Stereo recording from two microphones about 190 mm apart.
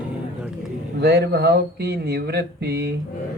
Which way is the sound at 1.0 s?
60° right (ahead or behind).